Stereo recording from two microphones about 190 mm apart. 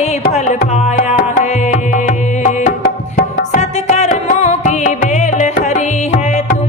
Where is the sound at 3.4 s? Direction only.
35° left (ahead or behind).